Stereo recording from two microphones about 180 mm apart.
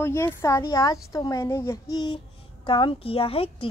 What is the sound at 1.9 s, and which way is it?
A child's voice, 25° left (ahead or behind).